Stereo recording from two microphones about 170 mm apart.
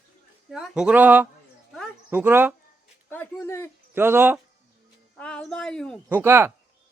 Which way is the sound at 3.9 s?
15° right (ahead or behind).